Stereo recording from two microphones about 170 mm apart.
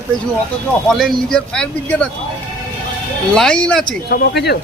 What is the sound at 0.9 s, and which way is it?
Speech, 5° left (ahead or behind).